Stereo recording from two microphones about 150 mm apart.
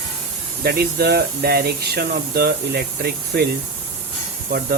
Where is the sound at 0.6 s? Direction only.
90° right.